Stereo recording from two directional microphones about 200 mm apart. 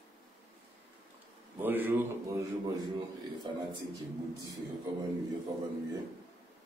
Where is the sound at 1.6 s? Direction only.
10° right (ahead or behind).